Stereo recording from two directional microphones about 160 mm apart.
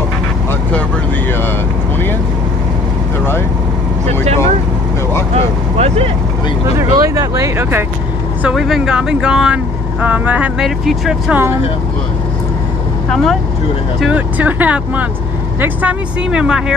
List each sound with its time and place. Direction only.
0.5 s vehicle: 10° left (ahead or behind)
5.3 s vehicle: 40° right (ahead or behind)
6.8 s a sound: 20° right (ahead or behind)
8.4 s speech: 5° right (ahead or behind)
13.1 s speech: centre (ahead or behind)